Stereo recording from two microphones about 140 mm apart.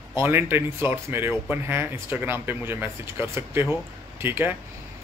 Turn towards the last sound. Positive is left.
turn(degrees=-15)  # may be behind; listen again after turning